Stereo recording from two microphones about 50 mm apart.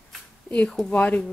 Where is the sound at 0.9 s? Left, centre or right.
Left.